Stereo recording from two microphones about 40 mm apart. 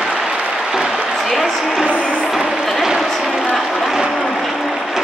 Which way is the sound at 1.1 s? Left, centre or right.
Centre.